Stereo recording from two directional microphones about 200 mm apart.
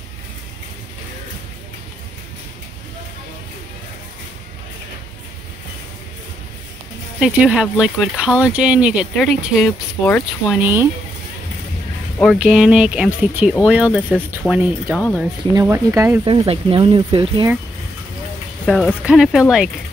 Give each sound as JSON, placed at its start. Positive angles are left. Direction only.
{"t": 7.2, "sound": "speech", "side_deg": -5}
{"t": 9.7, "sound": "speech", "side_deg": 10}
{"t": 10.5, "sound": "speech", "side_deg": -10}
{"t": 12.2, "sound": "speech", "side_deg": 0}
{"t": 16.3, "sound": "speech", "side_deg": -25}
{"t": 18.7, "sound": "speech", "side_deg": 0}